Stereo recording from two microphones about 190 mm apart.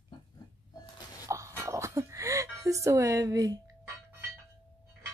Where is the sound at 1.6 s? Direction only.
15° right (ahead or behind).